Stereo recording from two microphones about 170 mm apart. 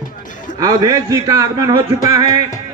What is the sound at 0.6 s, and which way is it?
A man's voice, 20° right (ahead or behind).